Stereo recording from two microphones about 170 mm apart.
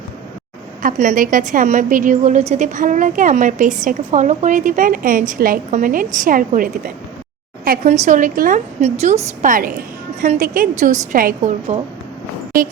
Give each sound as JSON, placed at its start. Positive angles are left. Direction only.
{"t": 0.8, "sound": "a woman's voice", "side_deg": -50}